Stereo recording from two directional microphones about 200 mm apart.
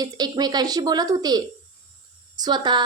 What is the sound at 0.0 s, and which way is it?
A woman's voice, 20° right (ahead or behind).